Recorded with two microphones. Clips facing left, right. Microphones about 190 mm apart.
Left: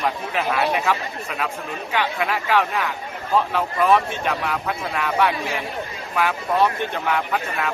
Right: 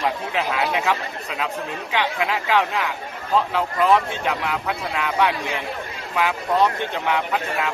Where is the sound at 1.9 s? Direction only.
15° right (ahead or behind).